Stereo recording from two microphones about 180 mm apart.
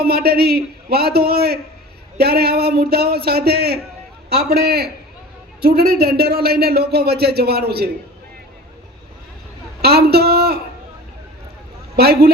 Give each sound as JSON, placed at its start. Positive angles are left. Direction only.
{"t": 0.0, "sound": "speech", "side_deg": -60}
{"t": 9.8, "sound": "speech", "side_deg": -60}
{"t": 11.9, "sound": "speech", "side_deg": -65}